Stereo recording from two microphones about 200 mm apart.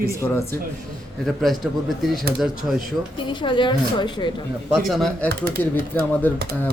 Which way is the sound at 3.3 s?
20° left (ahead or behind).